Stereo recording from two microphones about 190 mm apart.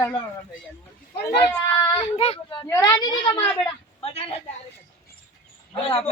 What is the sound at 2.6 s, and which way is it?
A woman's voice, 15° left (ahead or behind).